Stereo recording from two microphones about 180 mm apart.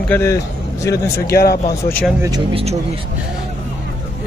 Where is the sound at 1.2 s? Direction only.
60° left (ahead or behind).